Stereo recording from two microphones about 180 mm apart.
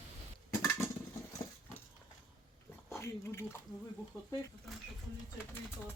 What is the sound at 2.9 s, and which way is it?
Speech, 15° left (ahead or behind).